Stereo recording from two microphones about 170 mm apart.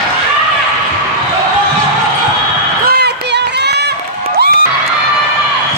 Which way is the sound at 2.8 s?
70° right (ahead or behind).